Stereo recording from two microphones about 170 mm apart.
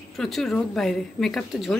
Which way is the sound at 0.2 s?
Centre (ahead or behind).